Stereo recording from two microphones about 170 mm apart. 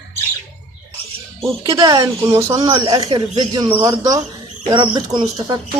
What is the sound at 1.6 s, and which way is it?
Speech, 25° right (ahead or behind).